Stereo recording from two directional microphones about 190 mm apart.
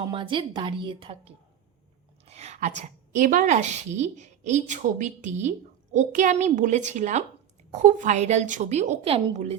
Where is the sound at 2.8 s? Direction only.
40° right (ahead or behind).